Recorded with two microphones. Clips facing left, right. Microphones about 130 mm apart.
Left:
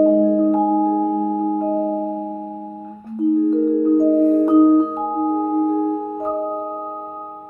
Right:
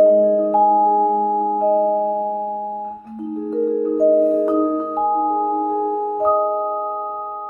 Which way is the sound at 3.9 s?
5° right (ahead or behind).